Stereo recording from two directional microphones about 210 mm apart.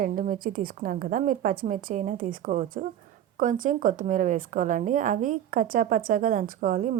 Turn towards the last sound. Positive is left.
turn(degrees=-40)  # may be behind; listen again after turning